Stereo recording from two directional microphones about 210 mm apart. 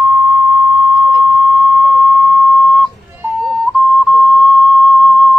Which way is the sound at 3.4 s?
Centre (ahead or behind).